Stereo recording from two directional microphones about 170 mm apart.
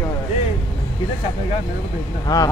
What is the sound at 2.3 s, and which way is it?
Speech, 20° left (ahead or behind).